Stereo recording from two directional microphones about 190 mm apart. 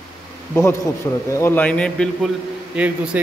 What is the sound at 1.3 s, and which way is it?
Speech, 15° left (ahead or behind).